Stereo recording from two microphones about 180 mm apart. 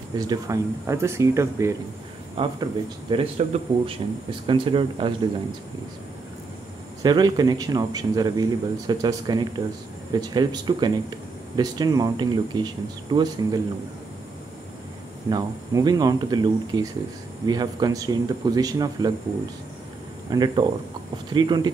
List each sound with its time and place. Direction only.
0.1 s speech: 20° right (ahead or behind)
2.3 s speech: 30° right (ahead or behind)
7.0 s speech: 20° right (ahead or behind)
15.2 s speech: 25° right (ahead or behind)
20.2 s speech: 25° right (ahead or behind)